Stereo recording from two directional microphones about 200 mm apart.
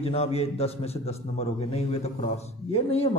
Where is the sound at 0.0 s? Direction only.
30° left (ahead or behind).